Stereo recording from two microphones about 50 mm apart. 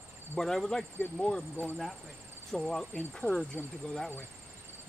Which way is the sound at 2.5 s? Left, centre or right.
Centre.